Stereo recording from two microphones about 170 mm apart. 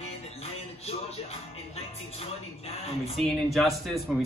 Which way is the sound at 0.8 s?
40° left (ahead or behind).